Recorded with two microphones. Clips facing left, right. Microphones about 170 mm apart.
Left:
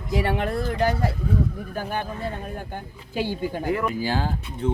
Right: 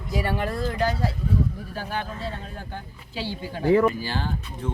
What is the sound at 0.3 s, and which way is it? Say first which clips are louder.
Speech: left 2 dB; 60° left (ahead or behind).